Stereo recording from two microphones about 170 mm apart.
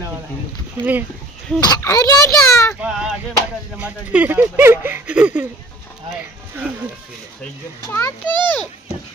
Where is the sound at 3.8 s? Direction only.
10° right (ahead or behind).